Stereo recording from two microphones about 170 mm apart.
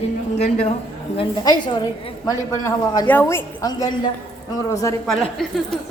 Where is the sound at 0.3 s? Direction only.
40° left (ahead or behind).